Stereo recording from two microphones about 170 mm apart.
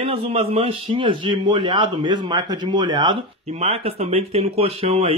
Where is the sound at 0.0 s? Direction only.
35° right (ahead or behind).